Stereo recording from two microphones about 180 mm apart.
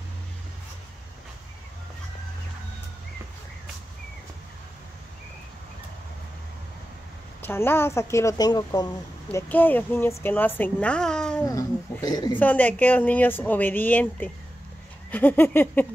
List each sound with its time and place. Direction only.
7.4 s a woman's voice: 10° left (ahead or behind)
9.3 s a woman's voice: 10° left (ahead or behind)
11.4 s a sound: 20° left (ahead or behind)
12.4 s a woman's voice: 10° left (ahead or behind)